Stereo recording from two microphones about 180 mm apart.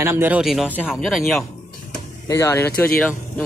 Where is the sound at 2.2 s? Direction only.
15° left (ahead or behind).